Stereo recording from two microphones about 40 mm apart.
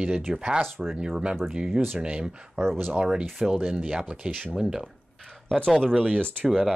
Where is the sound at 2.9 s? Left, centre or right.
Centre.